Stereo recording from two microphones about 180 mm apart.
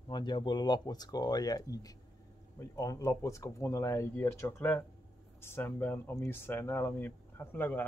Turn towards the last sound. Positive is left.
turn(degrees=10)  # may be behind; listen again after turning